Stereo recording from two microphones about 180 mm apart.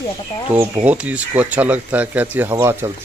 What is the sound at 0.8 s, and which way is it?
Speech, 5° right (ahead or behind).